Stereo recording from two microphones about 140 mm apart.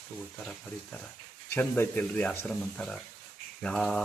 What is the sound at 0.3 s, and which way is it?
Speech, 5° left (ahead or behind).